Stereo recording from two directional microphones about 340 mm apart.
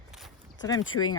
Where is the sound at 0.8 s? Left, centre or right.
Left.